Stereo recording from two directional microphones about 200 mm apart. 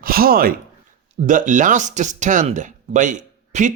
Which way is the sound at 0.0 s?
45° right (ahead or behind).